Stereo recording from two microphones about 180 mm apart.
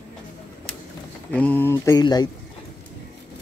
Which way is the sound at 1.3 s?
10° left (ahead or behind).